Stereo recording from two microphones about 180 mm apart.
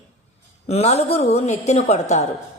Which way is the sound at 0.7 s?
35° left (ahead or behind).